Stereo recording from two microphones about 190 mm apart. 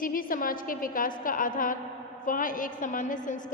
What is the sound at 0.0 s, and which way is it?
A woman's voice, 45° left (ahead or behind).